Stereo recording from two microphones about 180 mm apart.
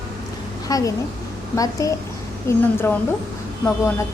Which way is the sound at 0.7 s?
20° left (ahead or behind).